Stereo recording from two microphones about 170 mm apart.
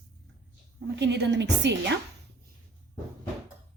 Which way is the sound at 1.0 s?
90° right.